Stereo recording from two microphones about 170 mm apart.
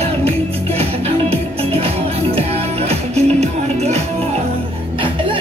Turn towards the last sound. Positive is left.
turn(degrees=-40)  # may be behind; listen again after turning